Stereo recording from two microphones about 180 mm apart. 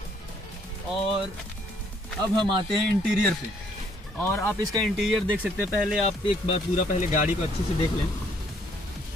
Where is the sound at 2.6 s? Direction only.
Centre (ahead or behind).